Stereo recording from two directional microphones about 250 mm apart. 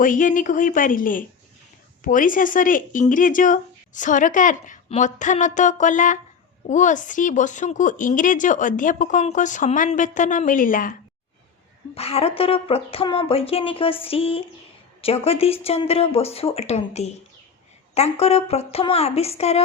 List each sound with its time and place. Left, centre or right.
0.0 s speech: left
11.9 s speech: left